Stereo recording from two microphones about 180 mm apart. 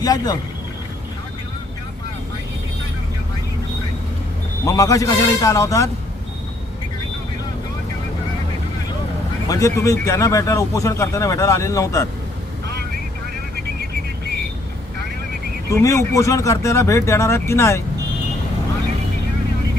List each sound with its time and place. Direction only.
0.0 s speech: 20° left (ahead or behind)
4.6 s speech: 20° left (ahead or behind)
9.5 s speech: 15° left (ahead or behind)
15.7 s speech: 15° left (ahead or behind)